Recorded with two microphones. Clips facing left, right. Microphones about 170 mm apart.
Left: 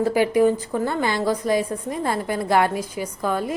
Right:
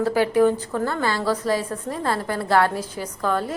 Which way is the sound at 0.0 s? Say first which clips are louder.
Even; 15° left (ahead or behind).